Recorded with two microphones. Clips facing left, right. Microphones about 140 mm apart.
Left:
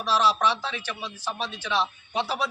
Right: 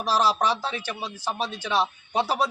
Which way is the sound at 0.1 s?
40° right (ahead or behind).